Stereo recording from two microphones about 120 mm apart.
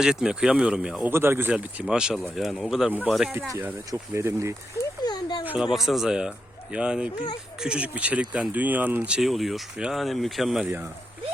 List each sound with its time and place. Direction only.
0.0 s speech: 5° right (ahead or behind)
1.1 s speech: 20° right (ahead or behind)
1.5 s speech: 5° right (ahead or behind)
3.6 s speech: 15° right (ahead or behind)
5.0 s a sound: 35° left (ahead or behind)
5.7 s speech: centre (ahead or behind)